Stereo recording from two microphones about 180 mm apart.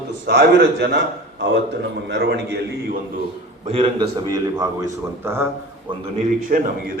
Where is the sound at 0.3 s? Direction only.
70° right (ahead or behind).